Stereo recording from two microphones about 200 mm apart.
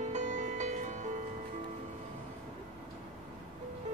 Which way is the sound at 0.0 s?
35° right (ahead or behind).